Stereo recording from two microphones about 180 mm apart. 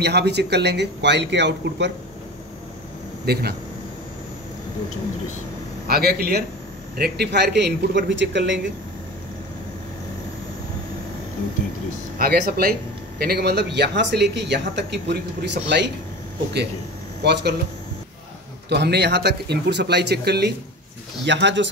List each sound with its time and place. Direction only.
0.0 s speech: 70° right (ahead or behind)
3.3 s a man's voice: 60° right (ahead or behind)
5.9 s a man's voice: 60° right (ahead or behind); by 8.5 s 85° right
12.2 s a man's voice: 55° right (ahead or behind); by 15.9 s 75° right (ahead or behind)
17.2 s speech: 70° right (ahead or behind)
18.7 s speech: 65° right (ahead or behind)
21.3 s speech: 80° right